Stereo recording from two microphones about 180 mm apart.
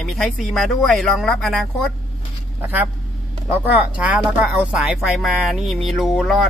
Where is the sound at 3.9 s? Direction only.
5° right (ahead or behind).